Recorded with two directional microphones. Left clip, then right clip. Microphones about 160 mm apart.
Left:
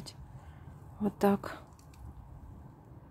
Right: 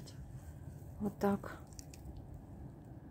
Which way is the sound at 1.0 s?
30° left (ahead or behind).